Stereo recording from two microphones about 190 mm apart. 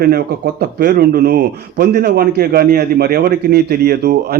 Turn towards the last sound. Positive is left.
turn(degrees=-60)  # may be behind; listen again after turning